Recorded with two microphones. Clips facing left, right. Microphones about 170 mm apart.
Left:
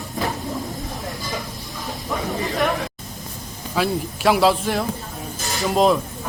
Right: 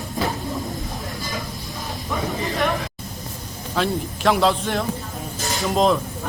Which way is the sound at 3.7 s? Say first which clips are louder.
Left 1 dB; 5° left (ahead or behind).